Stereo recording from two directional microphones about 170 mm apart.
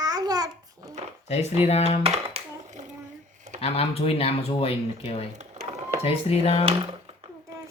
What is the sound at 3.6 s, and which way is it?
Speech, 35° left (ahead or behind).